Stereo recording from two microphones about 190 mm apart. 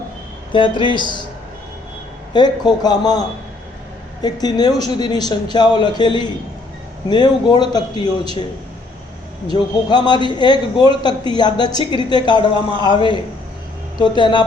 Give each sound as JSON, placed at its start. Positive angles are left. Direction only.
{"t": 0.5, "sound": "a woman's voice", "side_deg": 25}
{"t": 2.3, "sound": "a woman's voice", "side_deg": 20}
{"t": 9.5, "sound": "a woman's voice", "side_deg": 25}